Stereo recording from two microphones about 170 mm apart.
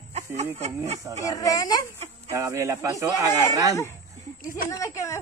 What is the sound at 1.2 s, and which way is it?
Speech, 20° left (ahead or behind).